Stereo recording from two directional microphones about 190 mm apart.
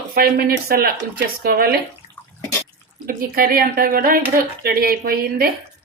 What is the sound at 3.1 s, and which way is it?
Speech, 50° right (ahead or behind).